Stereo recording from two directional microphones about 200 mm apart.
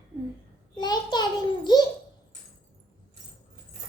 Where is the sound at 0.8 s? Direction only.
20° left (ahead or behind).